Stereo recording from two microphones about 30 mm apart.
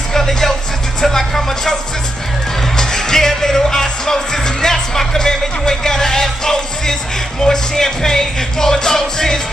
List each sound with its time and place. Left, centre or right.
0.1 s music: centre
2.8 s music: centre